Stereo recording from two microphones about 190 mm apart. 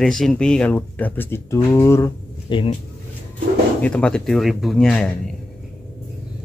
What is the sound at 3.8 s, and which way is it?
Speech, 5° left (ahead or behind).